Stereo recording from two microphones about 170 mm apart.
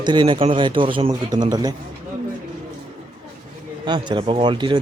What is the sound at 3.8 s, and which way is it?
Speech, 25° right (ahead or behind).